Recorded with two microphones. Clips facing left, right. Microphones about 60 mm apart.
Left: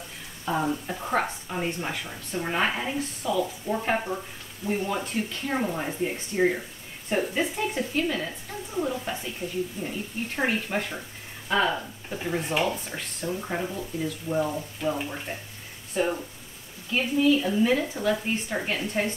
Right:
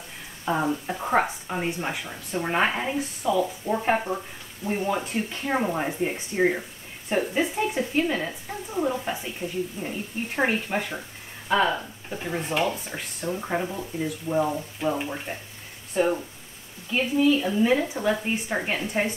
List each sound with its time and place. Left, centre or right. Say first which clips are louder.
0.5 s speech: right 2 dB; centre
13.3 s speech: right 3 dB; centre
14.4 s speech: right 2 dB; right
15.0 s speech: right 2 dB; centre